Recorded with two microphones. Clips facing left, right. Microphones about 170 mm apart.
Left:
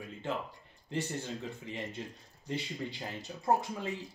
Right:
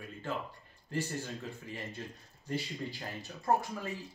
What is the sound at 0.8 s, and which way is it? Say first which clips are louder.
Speech: left 1 dB; 20° left (ahead or behind).